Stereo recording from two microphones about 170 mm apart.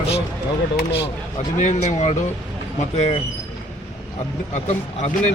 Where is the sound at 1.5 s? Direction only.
45° left (ahead or behind).